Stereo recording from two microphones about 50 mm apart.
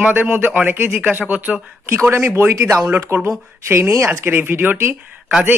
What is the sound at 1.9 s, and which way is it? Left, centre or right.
Speech, right.